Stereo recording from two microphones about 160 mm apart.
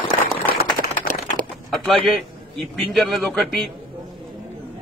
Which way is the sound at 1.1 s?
60° right (ahead or behind).